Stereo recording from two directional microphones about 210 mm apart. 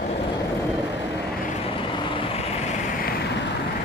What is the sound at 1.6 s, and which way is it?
Vehicle, 25° left (ahead or behind).